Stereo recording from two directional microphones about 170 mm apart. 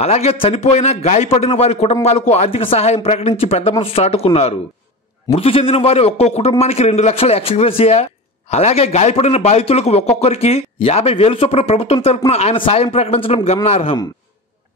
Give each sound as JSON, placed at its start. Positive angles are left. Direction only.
{"t": 0.0, "sound": "a man's voice", "side_deg": 40}